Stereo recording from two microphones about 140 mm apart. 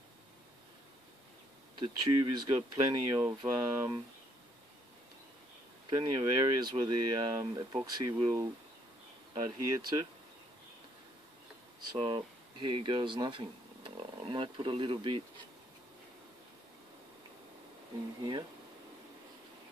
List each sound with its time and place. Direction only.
1.8 s speech: 30° right (ahead or behind)
5.9 s speech: 30° right (ahead or behind)
11.9 s speech: 35° right (ahead or behind)